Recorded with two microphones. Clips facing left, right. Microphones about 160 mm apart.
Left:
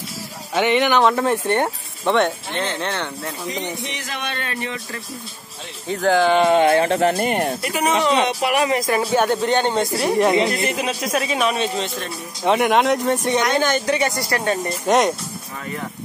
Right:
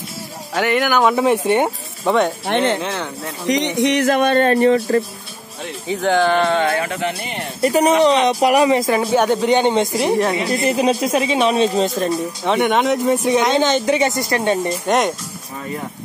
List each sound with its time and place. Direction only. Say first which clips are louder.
0.6 s speech: even; 5° right (ahead or behind)
2.4 s speech: right 8 dB; 75° right (ahead or behind)
2.8 s speech: right 1 dB; centre (ahead or behind)
3.4 s speech: right 13 dB; 85° right; by 5.0 s 40° right (ahead or behind)
5.9 s speech: even; centre (ahead or behind)
6.6 s speech: left 4 dB; 25° left (ahead or behind)
7.2 s speech: left 8 dB; 50° left (ahead or behind)
7.6 s speech: right 11 dB; 35° right (ahead or behind)
8.6 s speech: right 4 dB; 25° right (ahead or behind)
10.7 s speech: right 6 dB; 35° right (ahead or behind)
12.4 s speech: even; centre (ahead or behind)
13.5 s speech: right 3 dB; 20° right (ahead or behind)
14.9 s speech: left 1 dB; centre (ahead or behind)